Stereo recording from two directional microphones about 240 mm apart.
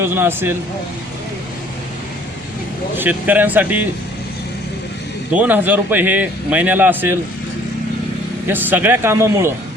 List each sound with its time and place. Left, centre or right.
0.0 s speech: centre
2.9 s speech: centre
5.3 s speech: centre
8.4 s speech: centre